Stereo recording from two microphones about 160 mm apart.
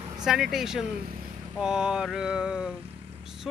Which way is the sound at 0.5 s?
5° right (ahead or behind).